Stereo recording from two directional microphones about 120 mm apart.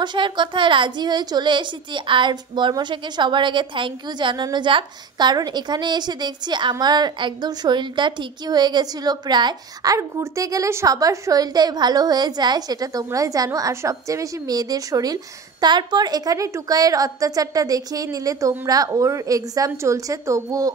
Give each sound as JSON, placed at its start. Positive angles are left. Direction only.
{"t": 0.0, "sound": "a woman's voice", "side_deg": -40}